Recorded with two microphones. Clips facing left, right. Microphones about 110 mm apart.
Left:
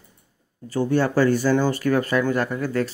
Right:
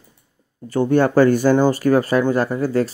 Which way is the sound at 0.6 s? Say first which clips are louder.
Right 5 dB; 50° right (ahead or behind).